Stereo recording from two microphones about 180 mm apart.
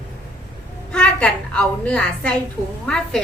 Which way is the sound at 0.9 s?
5° left (ahead or behind).